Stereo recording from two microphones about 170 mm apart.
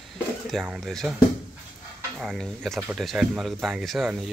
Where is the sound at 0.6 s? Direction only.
Centre (ahead or behind).